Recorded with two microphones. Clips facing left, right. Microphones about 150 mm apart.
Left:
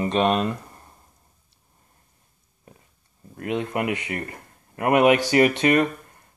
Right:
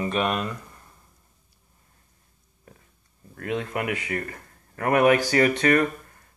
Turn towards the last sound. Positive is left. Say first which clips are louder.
# left 1 dB
turn(degrees=20)  # may be behind; listen again after turning